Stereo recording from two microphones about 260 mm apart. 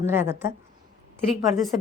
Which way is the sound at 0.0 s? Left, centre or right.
Centre.